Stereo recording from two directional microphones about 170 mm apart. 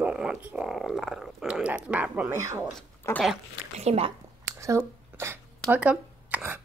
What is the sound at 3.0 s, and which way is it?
Speech, 15° left (ahead or behind).